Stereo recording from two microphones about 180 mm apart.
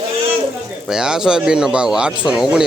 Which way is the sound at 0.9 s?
5° right (ahead or behind).